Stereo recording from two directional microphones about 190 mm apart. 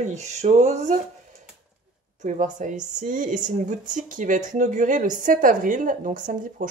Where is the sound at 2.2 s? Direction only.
40° right (ahead or behind).